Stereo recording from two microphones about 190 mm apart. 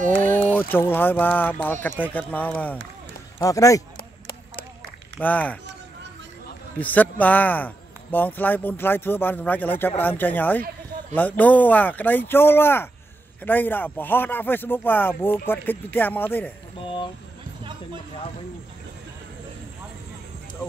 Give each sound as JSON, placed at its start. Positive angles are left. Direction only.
{"t": 0.2, "sound": "a man's voice", "side_deg": 10}
{"t": 3.9, "sound": "a sound", "side_deg": 50}
{"t": 5.2, "sound": "a man's voice", "side_deg": 10}
{"t": 6.8, "sound": "a man's voice", "side_deg": 10}
{"t": 16.8, "sound": "speech", "side_deg": 25}